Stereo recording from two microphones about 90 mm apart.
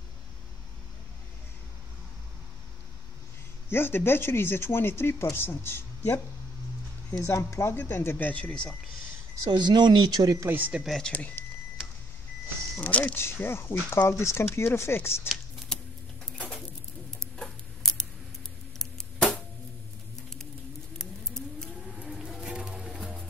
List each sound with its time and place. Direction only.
3.7 s speech: 25° left (ahead or behind)
7.1 s speech: 40° left (ahead or behind)
7.7 s speech: 20° left (ahead or behind)
9.5 s speech: 55° right (ahead or behind); by 10.5 s 40° right (ahead or behind)
10.5 s speech: 20° right (ahead or behind)
10.8 s speech: centre (ahead or behind)
11.1 s speech: 15° left (ahead or behind)
12.7 s speech: 15° left (ahead or behind)
13.2 s speech: 30° left (ahead or behind)
15.7 s a sound: 10° left (ahead or behind)
17.4 s scissors: 5° left (ahead or behind)
18.8 s a sound: 5° left (ahead or behind)
21.0 s a sound: 5° left (ahead or behind)
22.0 s music: 10° right (ahead or behind)